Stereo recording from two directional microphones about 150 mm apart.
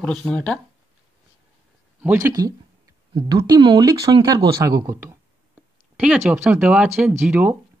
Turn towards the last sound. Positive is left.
turn(degrees=-10)  # may be behind; listen again after turning